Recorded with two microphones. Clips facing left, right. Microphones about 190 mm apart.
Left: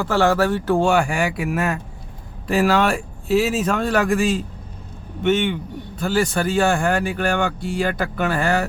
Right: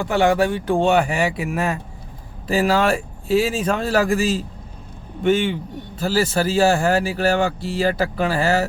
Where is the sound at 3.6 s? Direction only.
Centre (ahead or behind).